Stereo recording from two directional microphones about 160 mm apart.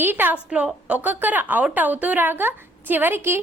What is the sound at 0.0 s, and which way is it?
A woman's voice, 10° right (ahead or behind).